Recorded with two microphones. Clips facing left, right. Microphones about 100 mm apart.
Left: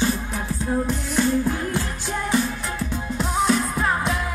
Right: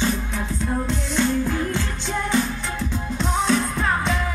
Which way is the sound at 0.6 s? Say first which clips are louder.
Left 2 dB; 10° left (ahead or behind).